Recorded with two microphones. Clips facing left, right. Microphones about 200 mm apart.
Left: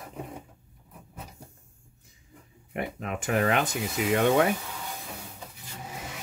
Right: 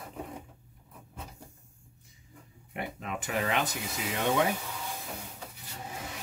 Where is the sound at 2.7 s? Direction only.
55° left (ahead or behind).